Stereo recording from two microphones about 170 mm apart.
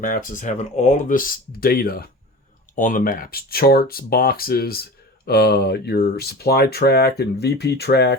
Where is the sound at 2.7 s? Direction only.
50° left (ahead or behind).